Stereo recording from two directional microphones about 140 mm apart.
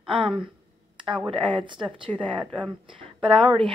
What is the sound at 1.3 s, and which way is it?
Speech, 35° right (ahead or behind).